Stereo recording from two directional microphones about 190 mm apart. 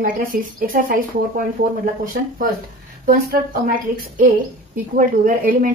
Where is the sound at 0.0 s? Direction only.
45° right (ahead or behind).